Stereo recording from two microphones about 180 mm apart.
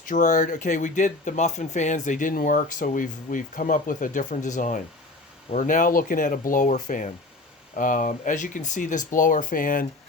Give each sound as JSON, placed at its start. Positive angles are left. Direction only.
{"t": 0.0, "sound": "speech", "side_deg": 45}